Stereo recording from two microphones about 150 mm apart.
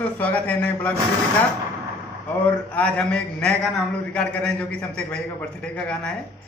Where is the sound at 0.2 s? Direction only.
10° left (ahead or behind).